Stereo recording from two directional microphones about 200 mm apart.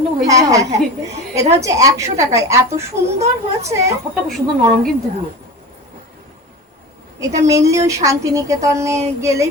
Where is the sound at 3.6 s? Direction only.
15° right (ahead or behind).